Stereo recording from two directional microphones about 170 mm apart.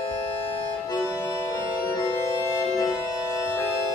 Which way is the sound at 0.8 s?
20° left (ahead or behind).